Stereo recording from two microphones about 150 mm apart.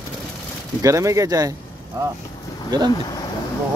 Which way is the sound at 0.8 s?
20° right (ahead or behind).